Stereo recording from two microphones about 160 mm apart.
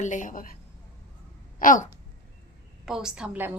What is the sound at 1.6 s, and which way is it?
Speech, 55° left (ahead or behind).